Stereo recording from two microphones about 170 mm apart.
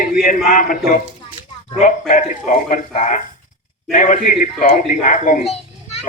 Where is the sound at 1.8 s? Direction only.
45° left (ahead or behind).